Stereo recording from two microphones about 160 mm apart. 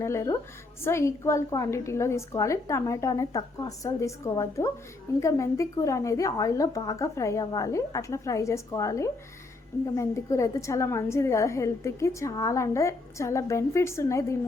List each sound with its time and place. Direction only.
0.0 s a woman's voice: 15° left (ahead or behind)